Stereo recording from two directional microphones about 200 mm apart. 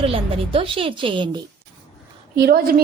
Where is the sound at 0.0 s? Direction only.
25° right (ahead or behind).